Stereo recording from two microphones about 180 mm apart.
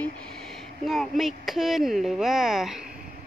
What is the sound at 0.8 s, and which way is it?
Speech, centre (ahead or behind).